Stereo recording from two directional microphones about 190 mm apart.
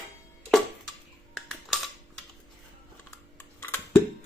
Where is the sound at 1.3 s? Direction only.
Centre (ahead or behind).